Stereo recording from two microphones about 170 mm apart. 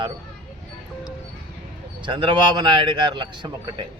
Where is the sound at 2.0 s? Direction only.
30° right (ahead or behind).